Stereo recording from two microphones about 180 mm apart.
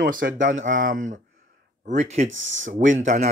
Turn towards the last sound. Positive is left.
turn(degrees=-45)  # may be behind; listen again after turning